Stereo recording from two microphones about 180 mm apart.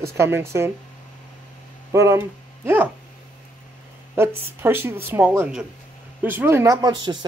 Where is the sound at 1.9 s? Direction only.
15° right (ahead or behind).